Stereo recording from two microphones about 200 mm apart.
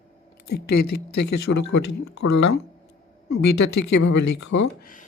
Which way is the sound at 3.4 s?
60° left (ahead or behind).